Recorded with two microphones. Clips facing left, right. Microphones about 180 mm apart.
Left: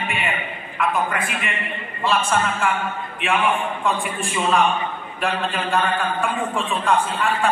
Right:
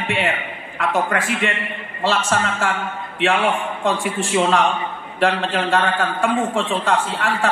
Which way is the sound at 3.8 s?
90° right.